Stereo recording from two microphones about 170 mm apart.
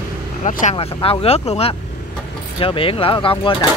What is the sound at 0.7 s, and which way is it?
Speech, 35° left (ahead or behind).